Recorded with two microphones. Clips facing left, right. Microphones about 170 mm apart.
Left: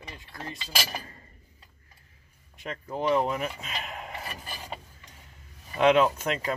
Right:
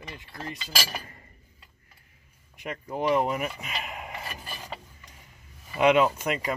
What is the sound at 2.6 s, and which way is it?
Speech, 15° right (ahead or behind).